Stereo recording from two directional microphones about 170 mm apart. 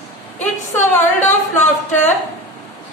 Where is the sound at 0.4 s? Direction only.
45° left (ahead or behind).